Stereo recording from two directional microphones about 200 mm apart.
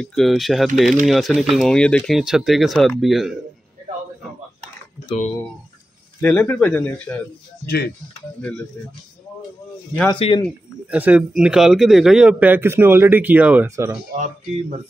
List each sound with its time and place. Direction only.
0.0 s speech: centre (ahead or behind)
6.2 s speech: 10° left (ahead or behind)
7.6 s speech: 50° left (ahead or behind)
8.4 s speech: 5° left (ahead or behind)
10.0 s speech: 25° left (ahead or behind)
10.9 s speech: 5° right (ahead or behind)
14.1 s speech: 40° right (ahead or behind)